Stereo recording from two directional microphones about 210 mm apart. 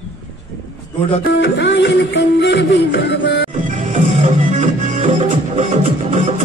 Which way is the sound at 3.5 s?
35° right (ahead or behind).